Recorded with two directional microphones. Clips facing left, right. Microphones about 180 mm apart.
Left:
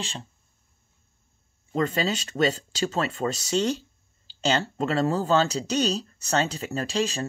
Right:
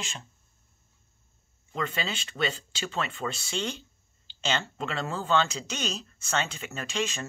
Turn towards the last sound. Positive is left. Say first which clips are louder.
# left 5 dB
turn(degrees=35)  # may be behind; listen again after turning